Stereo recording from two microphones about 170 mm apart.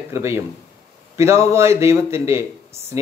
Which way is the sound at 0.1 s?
15° right (ahead or behind).